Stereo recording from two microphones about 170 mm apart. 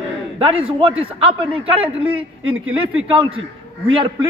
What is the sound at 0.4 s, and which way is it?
A man's voice, 30° right (ahead or behind).